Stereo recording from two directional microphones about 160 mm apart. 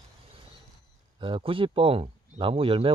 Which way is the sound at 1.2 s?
35° right (ahead or behind).